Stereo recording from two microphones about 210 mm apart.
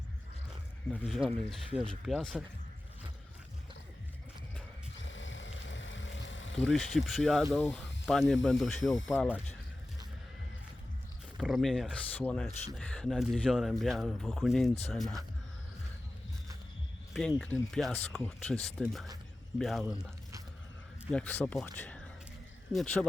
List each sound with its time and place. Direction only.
0.9 s speech: 5° right (ahead or behind)
5.0 s vehicle: 65° left (ahead or behind)
7.2 s speech: centre (ahead or behind)
11.3 s speech: centre (ahead or behind)
17.2 s speech: 5° left (ahead or behind)
21.1 s speech: 5° left (ahead or behind)